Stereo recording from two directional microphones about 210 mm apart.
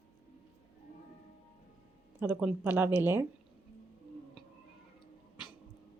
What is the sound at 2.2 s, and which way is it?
Speech, 10° right (ahead or behind).